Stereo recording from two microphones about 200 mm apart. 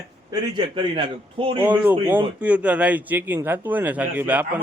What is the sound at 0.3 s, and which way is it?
A man's voice, 20° right (ahead or behind).